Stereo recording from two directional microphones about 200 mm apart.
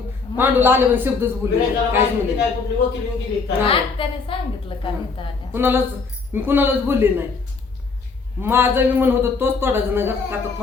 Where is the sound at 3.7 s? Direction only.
25° left (ahead or behind).